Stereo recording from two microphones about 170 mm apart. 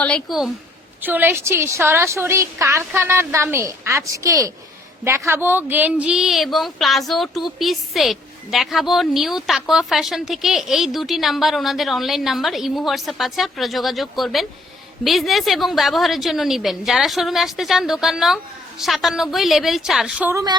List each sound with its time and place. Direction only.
0.0 s a woman's voice: centre (ahead or behind)
20.3 s speech: 25° right (ahead or behind)